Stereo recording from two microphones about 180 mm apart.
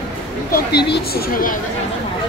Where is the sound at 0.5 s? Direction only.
65° left (ahead or behind).